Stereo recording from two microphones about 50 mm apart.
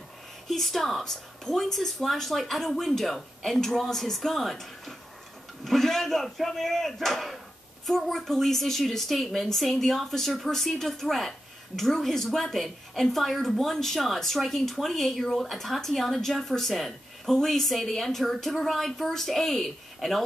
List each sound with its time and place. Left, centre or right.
0.5 s a woman's voice: centre